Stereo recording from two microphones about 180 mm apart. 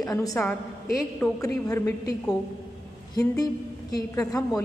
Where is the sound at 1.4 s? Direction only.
20° left (ahead or behind).